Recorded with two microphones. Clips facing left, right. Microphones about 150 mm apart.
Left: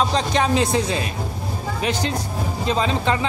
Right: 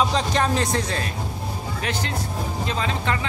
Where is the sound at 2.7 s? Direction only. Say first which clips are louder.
Left 6 dB; 20° left (ahead or behind).